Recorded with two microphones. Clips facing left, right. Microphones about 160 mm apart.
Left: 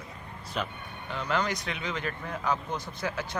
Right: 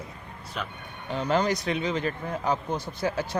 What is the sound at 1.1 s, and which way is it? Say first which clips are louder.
Speech: right 5 dB; 35° right (ahead or behind).